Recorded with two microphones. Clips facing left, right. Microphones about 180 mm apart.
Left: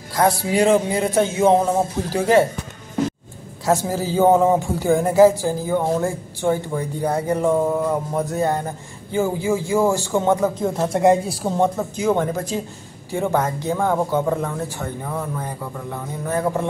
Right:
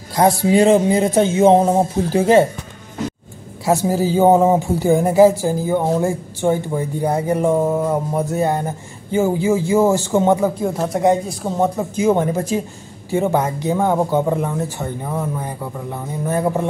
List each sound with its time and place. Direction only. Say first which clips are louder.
0.1 s speech: right 4 dB; 20° right (ahead or behind)
3.6 s speech: right 3 dB; 15° right (ahead or behind)
10.6 s speech: even; centre (ahead or behind)